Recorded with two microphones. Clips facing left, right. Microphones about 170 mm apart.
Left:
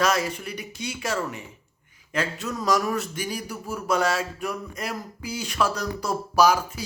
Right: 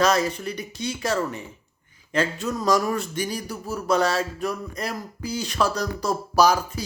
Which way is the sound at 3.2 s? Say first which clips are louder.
Right 3 dB; 10° left (ahead or behind).